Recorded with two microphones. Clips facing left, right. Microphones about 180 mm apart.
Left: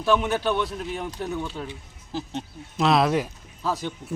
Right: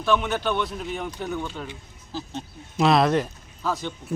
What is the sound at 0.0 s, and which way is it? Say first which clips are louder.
A man's voice: left 1 dB; 5° left (ahead or behind).